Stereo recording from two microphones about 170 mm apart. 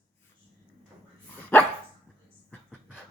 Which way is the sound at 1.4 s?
10° left (ahead or behind).